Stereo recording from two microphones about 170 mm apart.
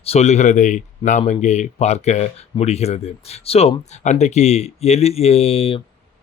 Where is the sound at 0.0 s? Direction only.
40° left (ahead or behind).